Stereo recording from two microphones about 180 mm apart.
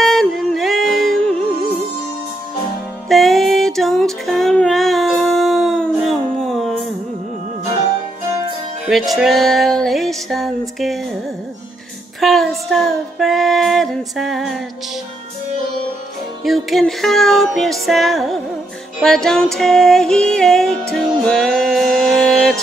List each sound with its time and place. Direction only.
0.0 s music: centre (ahead or behind)
3.1 s child singing: centre (ahead or behind)
8.8 s female singing: centre (ahead or behind)
12.2 s female singing: centre (ahead or behind)
16.4 s female singing: centre (ahead or behind)
20.9 s music: centre (ahead or behind)